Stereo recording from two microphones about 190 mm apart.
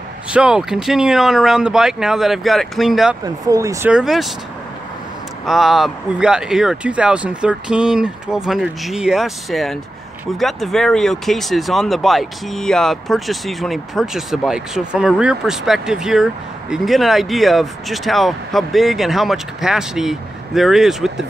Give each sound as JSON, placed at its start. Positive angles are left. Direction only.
{"t": 0.3, "sound": "speech", "side_deg": -5}
{"t": 3.4, "sound": "speech", "side_deg": -15}
{"t": 3.9, "sound": "speech", "side_deg": 0}
{"t": 5.4, "sound": "speech", "side_deg": 0}